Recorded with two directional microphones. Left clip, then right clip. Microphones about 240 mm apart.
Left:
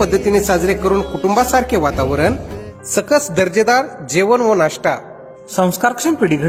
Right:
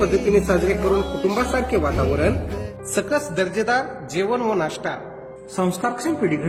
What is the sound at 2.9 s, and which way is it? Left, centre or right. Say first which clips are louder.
A man's voice: left 7 dB; left.